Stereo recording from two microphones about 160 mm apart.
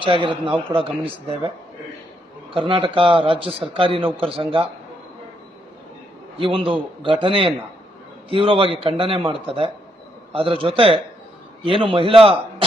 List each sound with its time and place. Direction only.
0.0 s a man's voice: 30° right (ahead or behind)
2.5 s a man's voice: 35° right (ahead or behind)
6.4 s a man's voice: 35° right (ahead or behind)